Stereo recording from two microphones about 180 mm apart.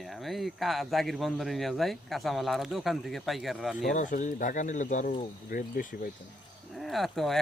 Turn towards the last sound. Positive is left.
turn(degrees=0)  # may be behind; listen again after turning